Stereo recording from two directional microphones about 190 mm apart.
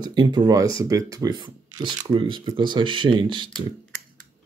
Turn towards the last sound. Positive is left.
turn(degrees=-25)  # may be behind; listen again after turning